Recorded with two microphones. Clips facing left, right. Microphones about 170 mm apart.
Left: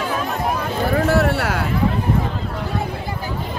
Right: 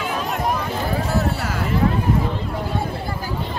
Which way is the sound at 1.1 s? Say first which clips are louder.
Left 4 dB; 75° left (ahead or behind).